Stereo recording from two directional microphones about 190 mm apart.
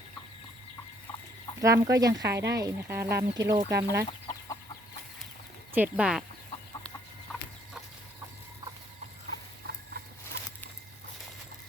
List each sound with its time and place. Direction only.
1.6 s speech: 15° right (ahead or behind)
2.2 s speech: 60° right (ahead or behind)
2.6 s speech: 15° right (ahead or behind)
3.7 s speech: 60° right (ahead or behind)
5.7 s speech: 5° right (ahead or behind)
7.3 s chicken: 5° left (ahead or behind)
9.6 s a sound: 55° right (ahead or behind)
10.3 s a sound: 15° left (ahead or behind)